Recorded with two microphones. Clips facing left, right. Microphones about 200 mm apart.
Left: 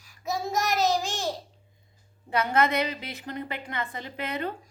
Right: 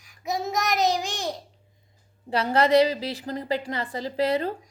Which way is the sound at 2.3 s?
30° right (ahead or behind).